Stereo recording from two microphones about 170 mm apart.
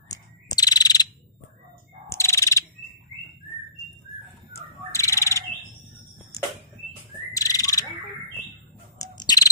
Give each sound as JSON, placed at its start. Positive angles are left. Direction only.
{"t": 0.1, "sound": "bird vocalization", "side_deg": 20}
{"t": 2.0, "sound": "bird", "side_deg": 15}
{"t": 4.9, "sound": "bird", "side_deg": 15}
{"t": 6.3, "sound": "a sound", "side_deg": 20}
{"t": 7.3, "sound": "bird", "side_deg": 20}
{"t": 8.9, "sound": "bird", "side_deg": 20}